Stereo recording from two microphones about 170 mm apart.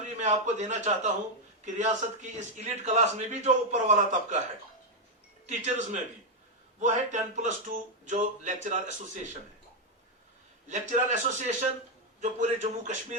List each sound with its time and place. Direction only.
0.2 s a man's voice: 45° right (ahead or behind)
5.5 s a man's voice: 45° right (ahead or behind)
10.7 s a man's voice: 45° right (ahead or behind)